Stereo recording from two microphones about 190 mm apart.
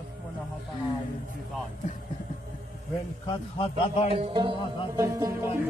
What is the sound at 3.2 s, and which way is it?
Speech, 30° left (ahead or behind).